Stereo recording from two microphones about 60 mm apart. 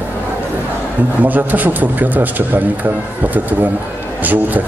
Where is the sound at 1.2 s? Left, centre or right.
Right.